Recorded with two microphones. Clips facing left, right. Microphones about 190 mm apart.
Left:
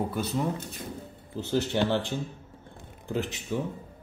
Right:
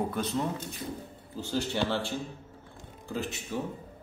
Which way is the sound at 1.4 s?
20° left (ahead or behind).